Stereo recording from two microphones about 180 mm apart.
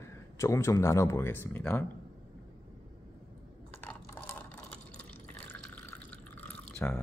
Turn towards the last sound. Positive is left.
turn(degrees=5)  # may be behind; listen again after turning